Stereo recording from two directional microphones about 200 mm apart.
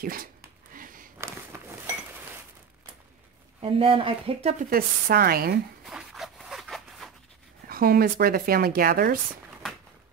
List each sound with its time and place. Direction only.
0.0 s speech: 45° right (ahead or behind)
0.7 s a sound: 45° right (ahead or behind)
1.1 s walk: 10° right (ahead or behind)
3.6 s speech: 25° right (ahead or behind)
4.6 s speech: 45° right (ahead or behind)
5.9 s zipper: centre (ahead or behind)
7.6 s speech: 50° right (ahead or behind)